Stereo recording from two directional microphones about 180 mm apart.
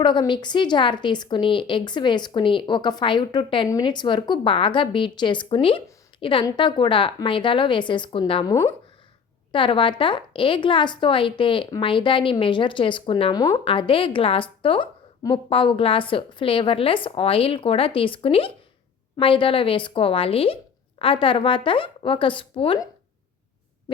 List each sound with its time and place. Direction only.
0.0 s a woman's voice: 25° left (ahead or behind)